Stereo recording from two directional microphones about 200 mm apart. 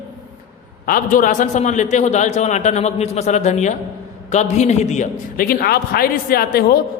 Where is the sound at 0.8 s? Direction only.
45° left (ahead or behind).